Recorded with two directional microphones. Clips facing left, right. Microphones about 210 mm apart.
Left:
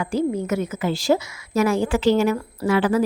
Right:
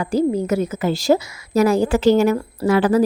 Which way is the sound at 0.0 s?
40° right (ahead or behind).